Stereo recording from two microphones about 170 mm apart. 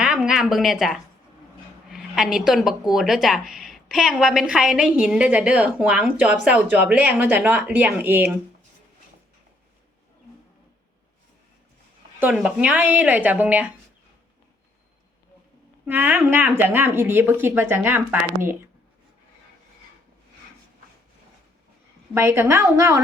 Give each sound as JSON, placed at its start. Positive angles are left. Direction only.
{"t": 0.0, "sound": "speech", "side_deg": -5}
{"t": 12.2, "sound": "speech", "side_deg": -5}
{"t": 15.9, "sound": "speech", "side_deg": -10}
{"t": 22.1, "sound": "speech", "side_deg": -15}